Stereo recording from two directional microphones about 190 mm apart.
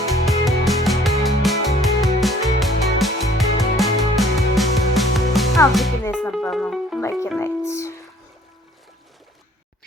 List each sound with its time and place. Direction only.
0.3 s music: centre (ahead or behind)
7.0 s music: 15° left (ahead or behind)